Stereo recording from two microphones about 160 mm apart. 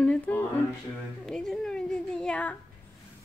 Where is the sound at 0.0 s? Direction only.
10° left (ahead or behind).